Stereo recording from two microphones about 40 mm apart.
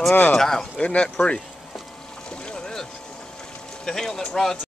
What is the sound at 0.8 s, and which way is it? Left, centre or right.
Speech, left.